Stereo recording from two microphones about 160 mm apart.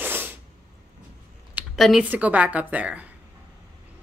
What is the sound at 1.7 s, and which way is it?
Speech, centre (ahead or behind).